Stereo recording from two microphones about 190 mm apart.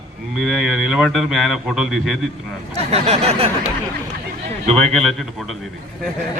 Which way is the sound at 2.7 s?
35° right (ahead or behind).